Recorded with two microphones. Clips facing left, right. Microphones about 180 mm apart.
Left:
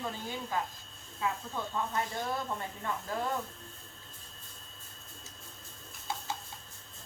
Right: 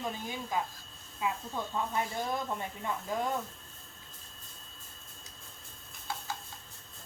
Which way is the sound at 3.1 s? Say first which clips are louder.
Right 2 dB; 15° right (ahead or behind).